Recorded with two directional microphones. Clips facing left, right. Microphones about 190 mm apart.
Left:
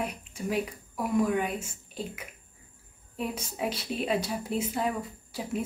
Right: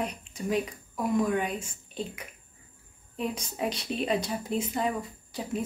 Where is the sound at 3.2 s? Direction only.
5° left (ahead or behind).